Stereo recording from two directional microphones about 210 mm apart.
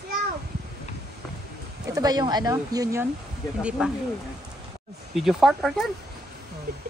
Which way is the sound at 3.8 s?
5° right (ahead or behind).